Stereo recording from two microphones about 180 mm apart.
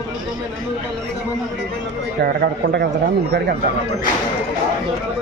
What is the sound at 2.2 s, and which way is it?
Speech, 60° right (ahead or behind).